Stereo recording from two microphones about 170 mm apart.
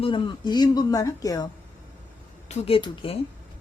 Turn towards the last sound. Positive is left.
turn(degrees=35)  # may be behind; listen again after turning